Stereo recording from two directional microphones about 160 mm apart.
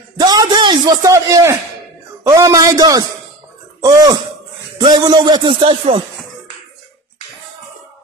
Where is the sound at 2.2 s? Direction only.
20° right (ahead or behind); by 6.0 s 35° right (ahead or behind).